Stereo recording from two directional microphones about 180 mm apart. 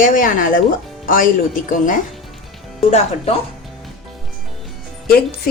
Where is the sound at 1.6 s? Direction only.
50° left (ahead or behind).